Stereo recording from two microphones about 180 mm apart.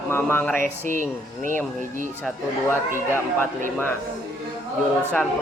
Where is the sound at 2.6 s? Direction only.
15° left (ahead or behind).